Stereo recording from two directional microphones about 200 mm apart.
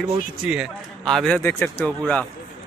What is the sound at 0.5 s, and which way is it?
A man's voice, centre (ahead or behind).